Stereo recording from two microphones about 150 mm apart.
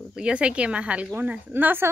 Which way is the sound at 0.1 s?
5° right (ahead or behind).